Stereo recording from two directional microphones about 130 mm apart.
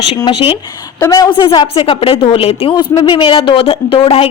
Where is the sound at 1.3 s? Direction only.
40° left (ahead or behind).